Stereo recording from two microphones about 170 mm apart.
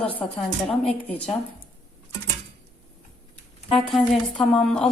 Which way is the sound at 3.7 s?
5° left (ahead or behind).